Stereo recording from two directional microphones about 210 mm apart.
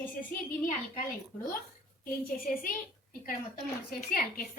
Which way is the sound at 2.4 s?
40° left (ahead or behind).